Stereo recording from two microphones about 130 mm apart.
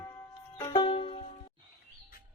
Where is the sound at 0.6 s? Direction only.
35° left (ahead or behind).